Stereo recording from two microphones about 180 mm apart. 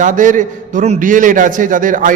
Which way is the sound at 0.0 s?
45° right (ahead or behind).